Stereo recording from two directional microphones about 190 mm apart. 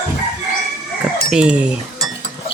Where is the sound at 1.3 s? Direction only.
5° right (ahead or behind).